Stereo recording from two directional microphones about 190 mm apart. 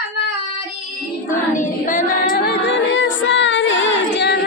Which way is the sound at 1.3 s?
45° left (ahead or behind).